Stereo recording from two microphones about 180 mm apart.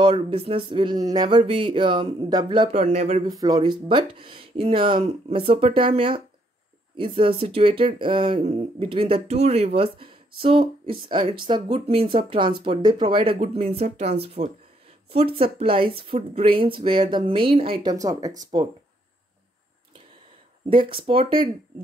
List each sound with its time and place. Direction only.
0.0 s speech: 30° right (ahead or behind)
2.8 s speech: 35° right (ahead or behind)
3.3 s speech: 20° right (ahead or behind)
20.9 s speech: 30° right (ahead or behind)